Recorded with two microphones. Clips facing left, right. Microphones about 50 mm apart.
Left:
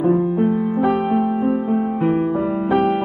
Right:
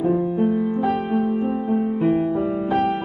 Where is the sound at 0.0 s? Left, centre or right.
Left.